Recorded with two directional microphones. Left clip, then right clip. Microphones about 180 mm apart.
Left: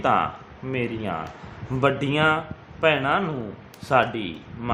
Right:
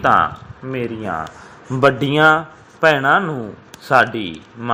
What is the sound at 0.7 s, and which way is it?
Speech, 15° right (ahead or behind).